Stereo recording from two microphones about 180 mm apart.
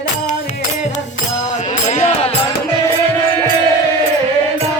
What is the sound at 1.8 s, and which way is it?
Music, 40° left (ahead or behind).